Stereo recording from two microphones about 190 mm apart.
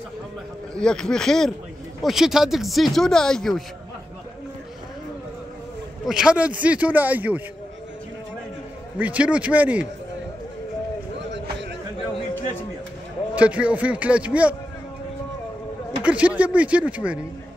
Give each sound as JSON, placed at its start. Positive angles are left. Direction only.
{"t": 0.7, "sound": "speech", "side_deg": 5}
{"t": 6.0, "sound": "speech", "side_deg": -5}
{"t": 8.9, "sound": "speech", "side_deg": -5}
{"t": 11.1, "sound": "a sound", "side_deg": -65}
{"t": 13.3, "sound": "speech", "side_deg": -5}
{"t": 16.0, "sound": "speech", "side_deg": -5}